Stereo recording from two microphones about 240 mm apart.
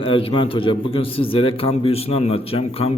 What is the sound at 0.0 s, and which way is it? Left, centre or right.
A man's voice, left.